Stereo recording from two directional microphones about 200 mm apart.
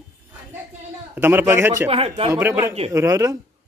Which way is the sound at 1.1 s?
10° right (ahead or behind).